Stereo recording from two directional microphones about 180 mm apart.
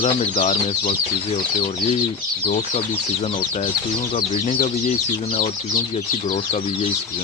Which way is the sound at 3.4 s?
45° left (ahead or behind).